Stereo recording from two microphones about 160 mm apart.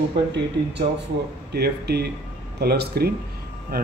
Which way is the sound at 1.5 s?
85° right.